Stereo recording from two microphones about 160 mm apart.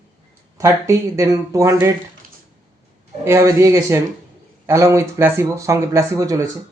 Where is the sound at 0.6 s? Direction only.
20° right (ahead or behind).